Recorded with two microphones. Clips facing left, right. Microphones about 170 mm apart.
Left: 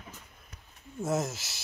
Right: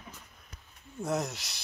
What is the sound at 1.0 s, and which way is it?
Speech, centre (ahead or behind).